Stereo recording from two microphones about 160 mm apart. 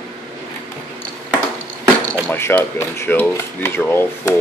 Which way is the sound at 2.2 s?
15° left (ahead or behind).